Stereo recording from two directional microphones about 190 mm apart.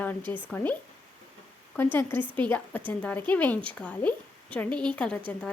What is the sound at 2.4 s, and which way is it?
Speech, 10° left (ahead or behind).